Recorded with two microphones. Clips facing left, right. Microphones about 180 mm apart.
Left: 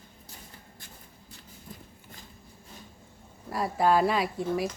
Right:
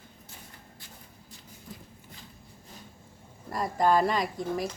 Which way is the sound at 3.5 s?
5° left (ahead or behind).